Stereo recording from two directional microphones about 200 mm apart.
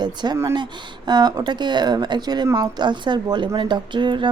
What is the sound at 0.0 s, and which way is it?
Speech, 20° right (ahead or behind).